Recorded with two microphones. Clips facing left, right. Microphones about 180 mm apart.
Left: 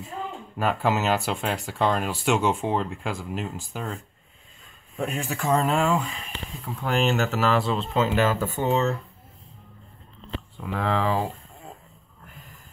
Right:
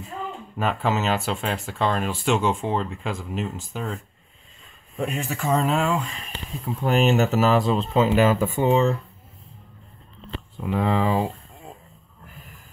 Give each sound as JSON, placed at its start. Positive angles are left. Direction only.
{"t": 0.6, "sound": "speech", "side_deg": 10}
{"t": 6.6, "sound": "speech", "side_deg": -20}
{"t": 10.6, "sound": "speech", "side_deg": -20}